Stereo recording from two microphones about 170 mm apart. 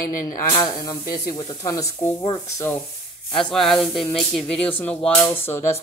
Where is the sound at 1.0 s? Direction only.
60° left (ahead or behind).